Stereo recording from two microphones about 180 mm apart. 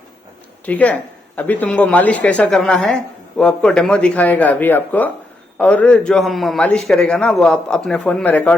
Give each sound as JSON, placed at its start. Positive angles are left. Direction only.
{"t": 0.6, "sound": "a man's voice", "side_deg": 10}